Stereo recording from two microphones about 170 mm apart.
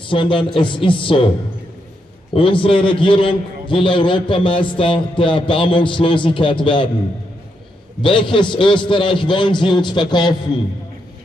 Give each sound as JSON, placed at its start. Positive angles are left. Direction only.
{"t": 0.0, "sound": "speech", "side_deg": 30}
{"t": 2.3, "sound": "a man's voice", "side_deg": 30}
{"t": 8.0, "sound": "a man's voice", "side_deg": 30}